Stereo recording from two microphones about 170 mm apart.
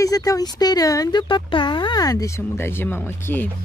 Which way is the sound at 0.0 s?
20° left (ahead or behind).